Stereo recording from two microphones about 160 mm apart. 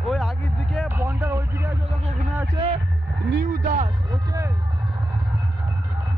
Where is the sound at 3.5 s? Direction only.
55° right (ahead or behind).